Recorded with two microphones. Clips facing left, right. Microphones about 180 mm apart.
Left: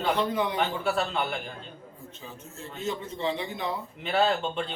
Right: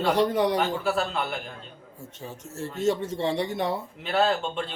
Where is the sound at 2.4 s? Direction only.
80° right.